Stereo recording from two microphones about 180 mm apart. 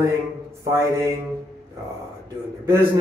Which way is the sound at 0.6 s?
15° right (ahead or behind).